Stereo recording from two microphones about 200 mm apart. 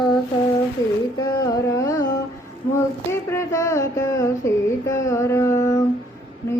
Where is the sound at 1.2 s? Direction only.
15° left (ahead or behind).